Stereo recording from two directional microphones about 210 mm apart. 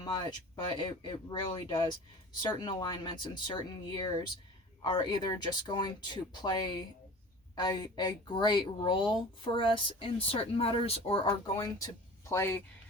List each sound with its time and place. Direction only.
0.0 s speech: 20° left (ahead or behind)